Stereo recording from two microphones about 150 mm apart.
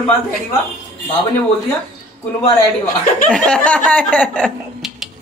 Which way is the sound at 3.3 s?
5° left (ahead or behind).